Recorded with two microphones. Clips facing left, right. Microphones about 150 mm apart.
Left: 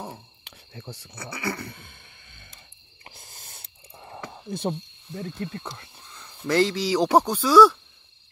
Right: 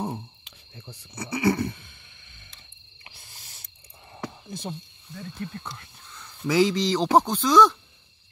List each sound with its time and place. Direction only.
0.5 s cricket: 80° left
1.1 s speech: 20° right (ahead or behind)
4.1 s a sound: 60° left (ahead or behind)
5.1 s speech: 30° left (ahead or behind)
6.4 s speech: centre (ahead or behind)